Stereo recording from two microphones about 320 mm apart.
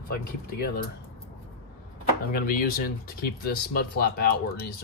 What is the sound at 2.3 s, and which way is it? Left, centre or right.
Speech, left.